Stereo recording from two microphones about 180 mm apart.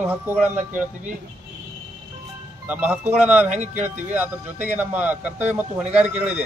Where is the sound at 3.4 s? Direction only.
40° right (ahead or behind).